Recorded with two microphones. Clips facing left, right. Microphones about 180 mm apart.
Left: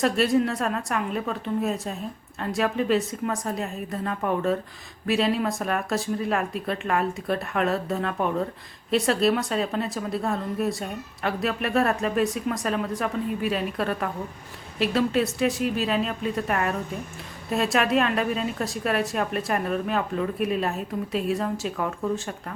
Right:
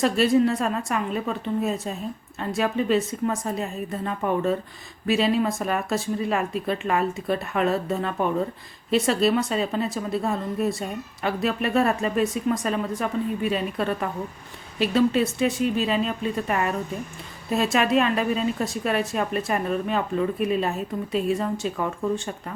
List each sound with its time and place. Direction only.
0.0 s a woman's voice: centre (ahead or behind)